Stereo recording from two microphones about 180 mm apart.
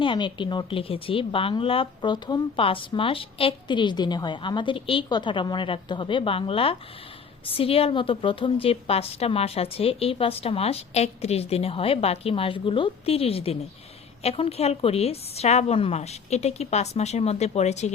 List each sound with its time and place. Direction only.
0.0 s a woman's voice: 25° left (ahead or behind)